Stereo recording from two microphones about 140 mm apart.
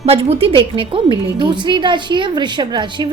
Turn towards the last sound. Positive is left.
turn(degrees=-35)  # may be behind; listen again after turning